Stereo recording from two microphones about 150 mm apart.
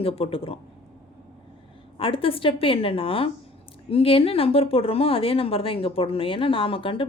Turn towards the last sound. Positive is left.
turn(degrees=35)  # may be behind; listen again after turning